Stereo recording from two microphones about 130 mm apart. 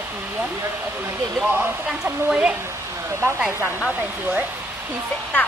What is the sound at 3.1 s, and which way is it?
Speech, 20° right (ahead or behind).